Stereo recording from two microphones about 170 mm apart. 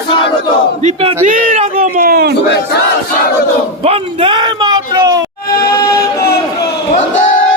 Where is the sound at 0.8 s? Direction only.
35° right (ahead or behind).